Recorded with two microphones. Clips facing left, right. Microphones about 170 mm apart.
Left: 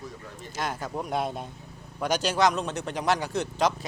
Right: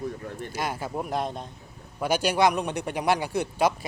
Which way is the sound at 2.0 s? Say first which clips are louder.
Right 2 dB; 10° right (ahead or behind).